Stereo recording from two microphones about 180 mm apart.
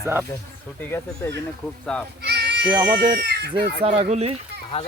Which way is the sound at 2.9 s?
65° right (ahead or behind).